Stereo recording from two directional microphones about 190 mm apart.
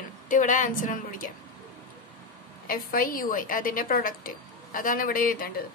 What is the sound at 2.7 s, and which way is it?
A woman's voice, 50° left (ahead or behind).